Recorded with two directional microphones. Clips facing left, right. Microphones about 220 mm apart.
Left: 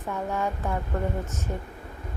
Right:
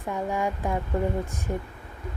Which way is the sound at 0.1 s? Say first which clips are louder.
Right 1 dB; 15° right (ahead or behind).